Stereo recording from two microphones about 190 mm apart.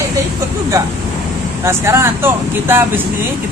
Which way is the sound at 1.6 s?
15° right (ahead or behind).